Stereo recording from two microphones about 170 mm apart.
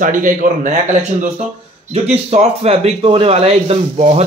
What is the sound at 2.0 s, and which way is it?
A man's voice, 40° right (ahead or behind).